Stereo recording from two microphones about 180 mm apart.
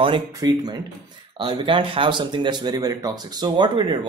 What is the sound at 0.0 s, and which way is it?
Speech, 25° right (ahead or behind).